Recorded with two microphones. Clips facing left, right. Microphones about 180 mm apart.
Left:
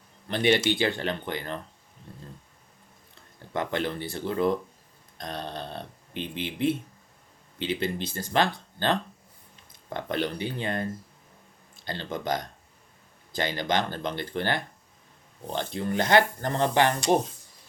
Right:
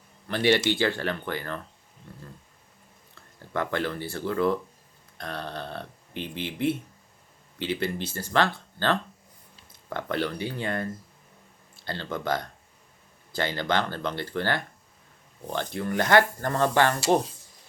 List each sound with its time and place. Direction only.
0.3 s speech: 20° left (ahead or behind)
3.5 s speech: 20° left (ahead or behind)